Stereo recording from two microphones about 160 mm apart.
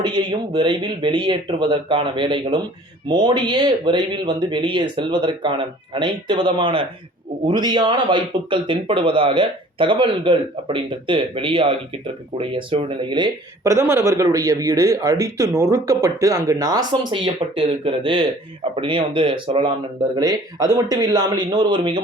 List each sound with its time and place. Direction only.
0.0 s speech: 30° right (ahead or behind)